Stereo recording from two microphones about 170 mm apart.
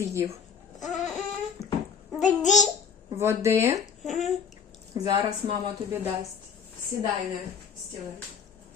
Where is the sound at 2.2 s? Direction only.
45° left (ahead or behind).